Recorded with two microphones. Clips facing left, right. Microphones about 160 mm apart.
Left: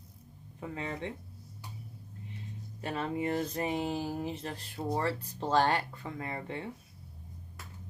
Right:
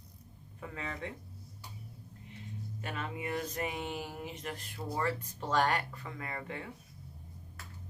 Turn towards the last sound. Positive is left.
turn(degrees=30)  # may be behind; listen again after turning